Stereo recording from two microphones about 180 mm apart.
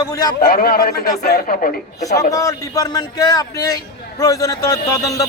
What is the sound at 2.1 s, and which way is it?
A man's voice, 20° left (ahead or behind).